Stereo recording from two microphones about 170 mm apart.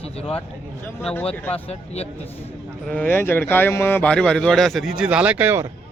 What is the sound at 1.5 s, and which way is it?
Speech, 35° left (ahead or behind).